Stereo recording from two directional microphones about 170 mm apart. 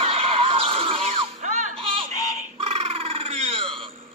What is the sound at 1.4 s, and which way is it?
Music, 45° right (ahead or behind).